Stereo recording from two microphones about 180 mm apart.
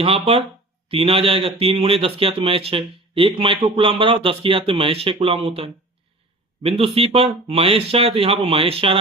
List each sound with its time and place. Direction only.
0.0 s speech: 30° right (ahead or behind)